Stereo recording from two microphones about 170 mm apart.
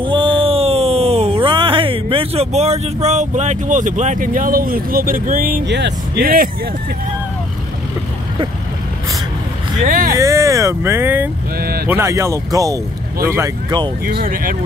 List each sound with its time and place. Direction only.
0.0 s a sound: 30° right (ahead or behind); by 5.6 s 55° right (ahead or behind)
5.7 s speech: 90° right; by 6.5 s 60° right (ahead or behind)
9.8 s speech: 55° right (ahead or behind)
10.1 s speech: 20° right (ahead or behind)
11.5 s speech: 60° right (ahead or behind)
11.9 s speech: 15° right (ahead or behind)
14.0 s speech: 55° right (ahead or behind)